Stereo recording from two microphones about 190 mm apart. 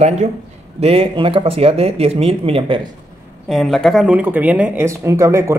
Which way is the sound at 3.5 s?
Centre (ahead or behind).